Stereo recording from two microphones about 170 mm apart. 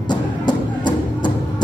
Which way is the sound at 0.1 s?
25° left (ahead or behind).